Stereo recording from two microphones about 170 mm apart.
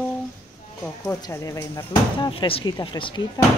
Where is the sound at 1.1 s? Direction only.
15° left (ahead or behind).